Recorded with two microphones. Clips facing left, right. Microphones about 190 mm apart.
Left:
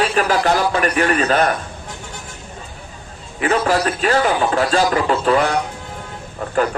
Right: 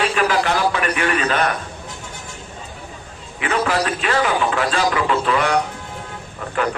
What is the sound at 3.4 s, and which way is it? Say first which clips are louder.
A man's voice: left 3 dB; 40° left (ahead or behind).